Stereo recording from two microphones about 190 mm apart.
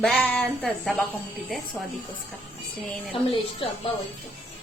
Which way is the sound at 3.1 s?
30° left (ahead or behind).